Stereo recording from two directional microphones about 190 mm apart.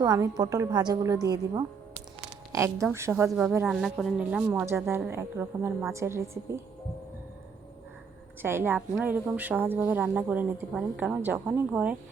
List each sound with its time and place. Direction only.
0.0 s a woman's voice: 20° right (ahead or behind)
3.2 s a woman's voice: centre (ahead or behind)
8.4 s a woman's voice: 10° right (ahead or behind)